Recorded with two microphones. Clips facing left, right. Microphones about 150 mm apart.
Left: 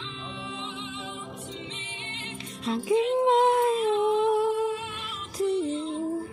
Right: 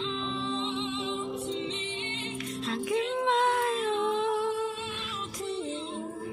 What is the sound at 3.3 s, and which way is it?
Humming, 25° left (ahead or behind).